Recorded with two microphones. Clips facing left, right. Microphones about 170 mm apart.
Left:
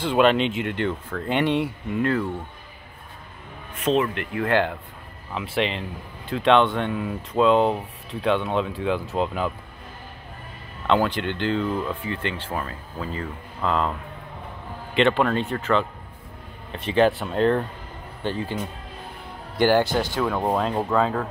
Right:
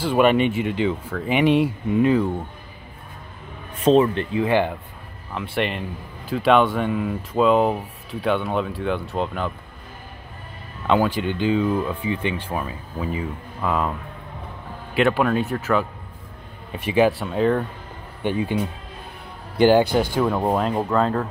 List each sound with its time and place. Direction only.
0.0 s speech: 5° right (ahead or behind)
3.8 s speech: 30° right (ahead or behind)
4.3 s speech: 15° right (ahead or behind)
5.3 s speech: centre (ahead or behind)
10.9 s speech: 10° right (ahead or behind)
15.0 s speech: 5° right (ahead or behind)
18.2 s speech: 15° right (ahead or behind)